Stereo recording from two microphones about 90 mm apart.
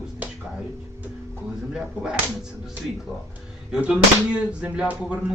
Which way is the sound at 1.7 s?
10° right (ahead or behind).